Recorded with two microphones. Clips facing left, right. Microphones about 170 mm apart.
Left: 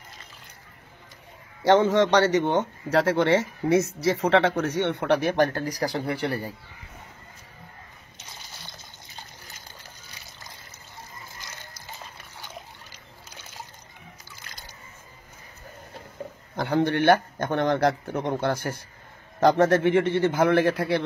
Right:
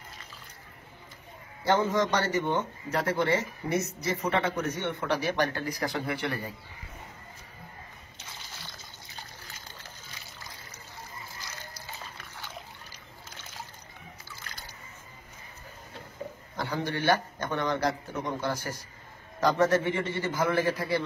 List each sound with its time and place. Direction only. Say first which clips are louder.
1.6 s a man's voice: left 7 dB; 85° left; by 6.4 s 35° left (ahead or behind)
16.5 s a man's voice: left 9 dB; 65° left (ahead or behind)